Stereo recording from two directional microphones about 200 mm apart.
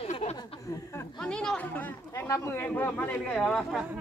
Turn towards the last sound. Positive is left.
turn(degrees=0)  # may be behind; listen again after turning